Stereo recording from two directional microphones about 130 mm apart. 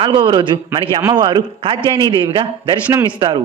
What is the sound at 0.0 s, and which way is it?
A man's voice, 40° right (ahead or behind).